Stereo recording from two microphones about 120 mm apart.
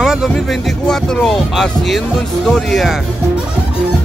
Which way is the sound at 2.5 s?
Centre (ahead or behind).